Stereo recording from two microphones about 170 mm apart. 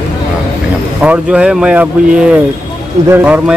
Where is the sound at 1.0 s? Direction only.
10° right (ahead or behind).